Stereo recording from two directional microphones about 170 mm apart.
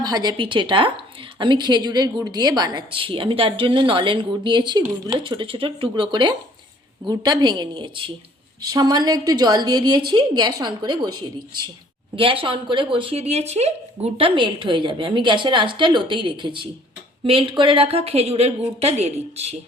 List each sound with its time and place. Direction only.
0.0 s a woman's voice: 25° right (ahead or behind)